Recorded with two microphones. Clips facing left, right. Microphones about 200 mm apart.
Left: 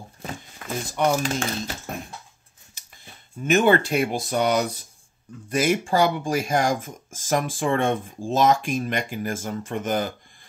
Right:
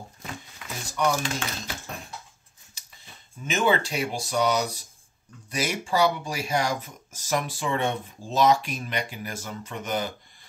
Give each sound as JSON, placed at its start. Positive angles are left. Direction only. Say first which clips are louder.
{"t": 0.6, "sound": "speech", "louder": "left 4 dB", "side_deg": 50}
{"t": 3.4, "sound": "speech", "louder": "left 6 dB", "side_deg": 60}